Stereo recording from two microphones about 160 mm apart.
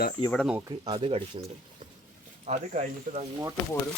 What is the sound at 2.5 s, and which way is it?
Speech, 45° right (ahead or behind).